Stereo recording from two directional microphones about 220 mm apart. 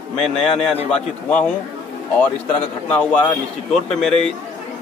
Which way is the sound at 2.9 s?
5° left (ahead or behind).